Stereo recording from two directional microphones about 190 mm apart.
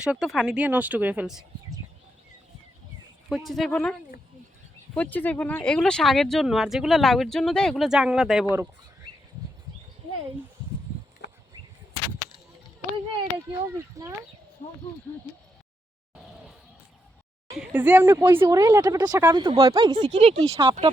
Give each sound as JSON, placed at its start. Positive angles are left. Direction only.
{"t": 0.0, "sound": "speech", "side_deg": -5}
{"t": 3.2, "sound": "speech", "side_deg": 0}
{"t": 4.9, "sound": "speech", "side_deg": 10}
{"t": 13.5, "sound": "speech", "side_deg": -15}
{"t": 17.6, "sound": "speech", "side_deg": -10}
{"t": 20.0, "sound": "speech", "side_deg": -30}
{"t": 20.4, "sound": "speech", "side_deg": -15}